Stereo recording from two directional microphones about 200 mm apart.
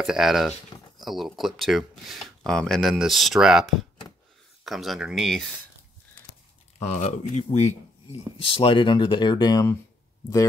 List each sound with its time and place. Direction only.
0.0 s speech: centre (ahead or behind)
6.8 s speech: 35° left (ahead or behind); by 9.8 s 15° left (ahead or behind)